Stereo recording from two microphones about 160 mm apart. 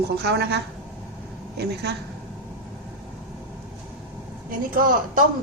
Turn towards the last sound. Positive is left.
turn(degrees=-60)  # may be behind; listen again after turning